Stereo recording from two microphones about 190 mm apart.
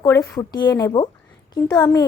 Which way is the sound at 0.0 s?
15° left (ahead or behind).